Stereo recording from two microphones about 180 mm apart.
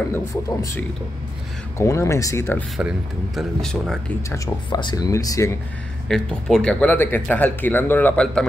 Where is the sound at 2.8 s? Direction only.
5° right (ahead or behind).